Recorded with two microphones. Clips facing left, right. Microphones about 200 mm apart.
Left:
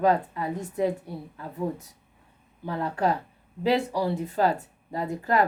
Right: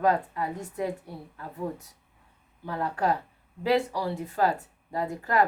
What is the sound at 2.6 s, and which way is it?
Speech, 25° left (ahead or behind).